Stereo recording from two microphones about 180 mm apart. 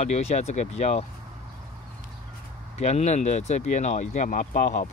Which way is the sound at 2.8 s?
40° left (ahead or behind).